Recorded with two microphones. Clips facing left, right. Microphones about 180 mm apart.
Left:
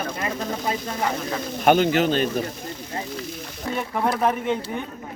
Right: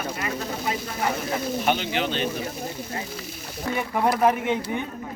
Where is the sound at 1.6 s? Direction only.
50° left (ahead or behind).